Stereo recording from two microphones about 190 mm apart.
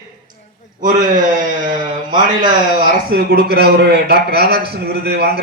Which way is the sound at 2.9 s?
55° right (ahead or behind).